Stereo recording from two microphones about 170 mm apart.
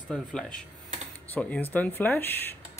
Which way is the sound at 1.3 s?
10° left (ahead or behind).